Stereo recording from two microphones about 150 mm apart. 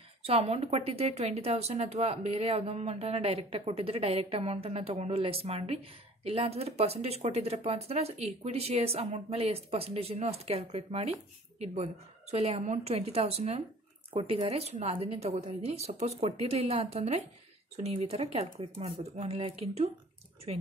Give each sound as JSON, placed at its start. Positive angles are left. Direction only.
{"t": 0.2, "sound": "speech", "side_deg": -40}